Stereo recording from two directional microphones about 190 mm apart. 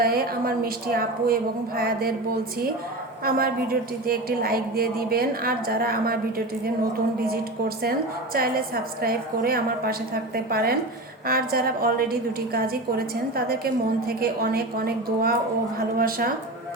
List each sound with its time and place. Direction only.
0.0 s a woman's voice: 50° right (ahead or behind)
3.2 s a woman's voice: 50° right (ahead or behind)
7.8 s a woman's voice: 55° right (ahead or behind)